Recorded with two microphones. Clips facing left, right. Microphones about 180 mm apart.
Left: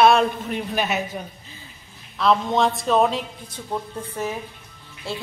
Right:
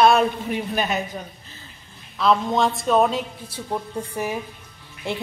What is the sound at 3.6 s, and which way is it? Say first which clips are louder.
A woman's voice: right 1 dB; 10° right (ahead or behind).